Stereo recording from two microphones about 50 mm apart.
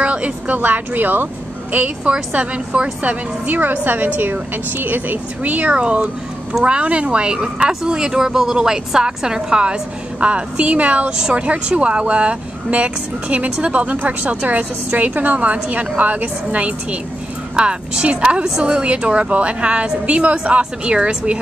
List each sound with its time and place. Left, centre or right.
0.0 s a woman's voice: right
2.3 s a woman's voice: right
11.1 s a woman's voice: centre